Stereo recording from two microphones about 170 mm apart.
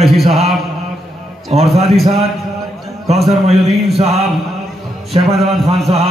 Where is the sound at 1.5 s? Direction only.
40° right (ahead or behind).